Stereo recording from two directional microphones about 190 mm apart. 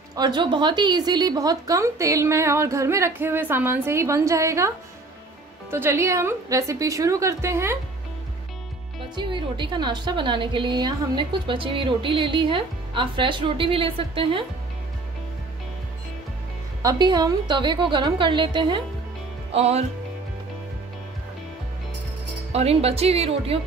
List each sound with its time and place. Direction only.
0.1 s a woman's voice: 20° right (ahead or behind)
9.1 s a woman's voice: 25° right (ahead or behind)
16.8 s a woman's voice: 20° right (ahead or behind)
22.5 s speech: 30° right (ahead or behind)